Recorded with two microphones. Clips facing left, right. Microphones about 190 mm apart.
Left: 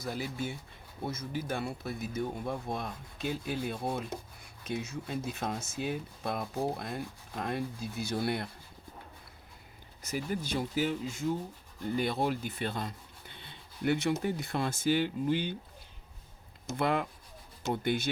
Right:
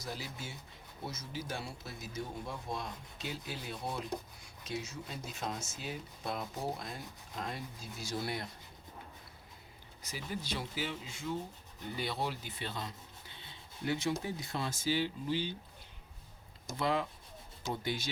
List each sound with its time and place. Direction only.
0.0 s speech: 55° left (ahead or behind)
10.1 s speech: 50° left (ahead or behind)
16.7 s speech: 55° left (ahead or behind)